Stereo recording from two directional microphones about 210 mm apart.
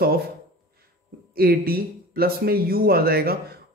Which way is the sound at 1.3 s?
45° right (ahead or behind).